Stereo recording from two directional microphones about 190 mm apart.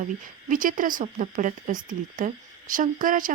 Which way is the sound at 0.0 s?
45° right (ahead or behind).